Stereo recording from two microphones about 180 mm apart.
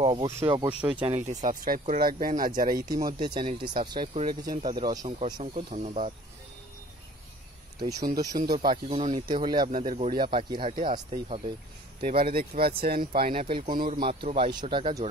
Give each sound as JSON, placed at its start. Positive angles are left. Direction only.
{"t": 0.0, "sound": "speech", "side_deg": -30}
{"t": 0.7, "sound": "speech", "side_deg": -5}
{"t": 1.0, "sound": "speech", "side_deg": -40}
{"t": 3.3, "sound": "speech", "side_deg": -25}
{"t": 5.4, "sound": "speech", "side_deg": -35}
{"t": 7.8, "sound": "speech", "side_deg": -20}
{"t": 8.8, "sound": "speech", "side_deg": -35}
{"t": 9.1, "sound": "speech", "side_deg": -25}
{"t": 9.7, "sound": "speech", "side_deg": -50}
{"t": 9.9, "sound": "speech", "side_deg": -30}
{"t": 12.0, "sound": "speech", "side_deg": -55}
{"t": 13.3, "sound": "speech", "side_deg": -35}